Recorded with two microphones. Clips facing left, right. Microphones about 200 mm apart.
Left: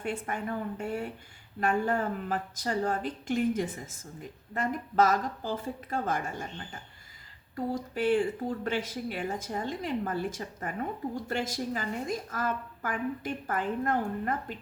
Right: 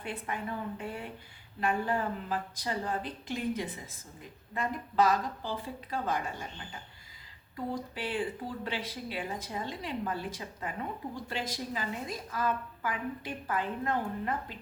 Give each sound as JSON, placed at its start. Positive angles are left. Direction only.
{"t": 0.0, "sound": "speech", "side_deg": 45}
{"t": 1.6, "sound": "speech", "side_deg": 45}